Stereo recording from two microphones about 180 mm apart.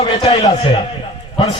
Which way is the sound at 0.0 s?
30° left (ahead or behind).